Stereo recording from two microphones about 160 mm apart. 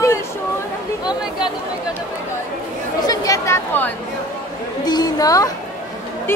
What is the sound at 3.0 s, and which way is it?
Speech, 20° left (ahead or behind).